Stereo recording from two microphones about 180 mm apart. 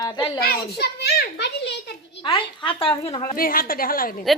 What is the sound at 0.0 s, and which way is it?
Speech, 25° left (ahead or behind).